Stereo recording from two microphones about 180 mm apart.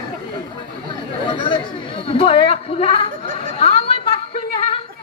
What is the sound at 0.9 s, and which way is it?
Chatter, 25° left (ahead or behind).